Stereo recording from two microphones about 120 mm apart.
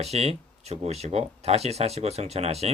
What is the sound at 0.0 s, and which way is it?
Speech, 60° right (ahead or behind).